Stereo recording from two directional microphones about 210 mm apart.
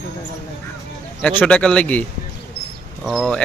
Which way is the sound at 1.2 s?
5° left (ahead or behind).